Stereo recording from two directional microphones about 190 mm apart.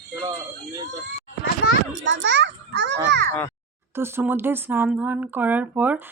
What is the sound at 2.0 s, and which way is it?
Children playing, 75° right (ahead or behind).